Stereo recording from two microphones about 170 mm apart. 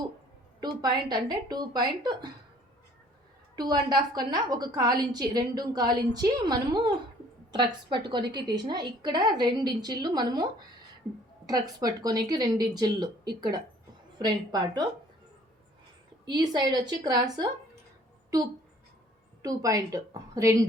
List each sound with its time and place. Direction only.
0.6 s a woman's voice: 25° right (ahead or behind)
3.5 s a woman's voice: 25° right (ahead or behind)
11.4 s a woman's voice: 20° right (ahead or behind)
16.3 s a woman's voice: 25° right (ahead or behind)
19.4 s a woman's voice: 20° right (ahead or behind)